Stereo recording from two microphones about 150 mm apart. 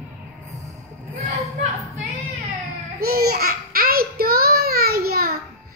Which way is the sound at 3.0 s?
90° right.